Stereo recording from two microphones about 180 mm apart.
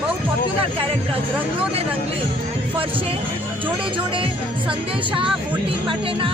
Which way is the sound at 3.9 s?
30° right (ahead or behind).